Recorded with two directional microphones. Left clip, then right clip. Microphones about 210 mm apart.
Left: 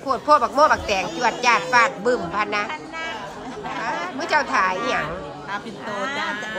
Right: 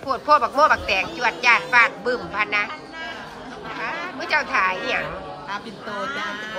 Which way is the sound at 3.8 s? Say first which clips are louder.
Left 1 dB; 10° left (ahead or behind).